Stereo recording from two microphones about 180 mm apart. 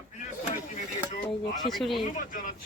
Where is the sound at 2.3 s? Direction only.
45° left (ahead or behind).